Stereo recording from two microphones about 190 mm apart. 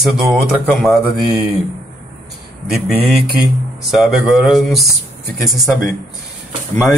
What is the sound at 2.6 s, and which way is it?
Speech, 5° right (ahead or behind).